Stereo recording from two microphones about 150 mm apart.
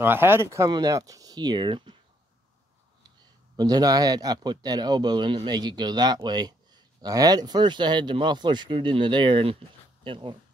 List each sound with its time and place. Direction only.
0.0 s a man's voice: 15° right (ahead or behind); by 2.0 s 30° right (ahead or behind)
3.5 s a man's voice: 25° right (ahead or behind)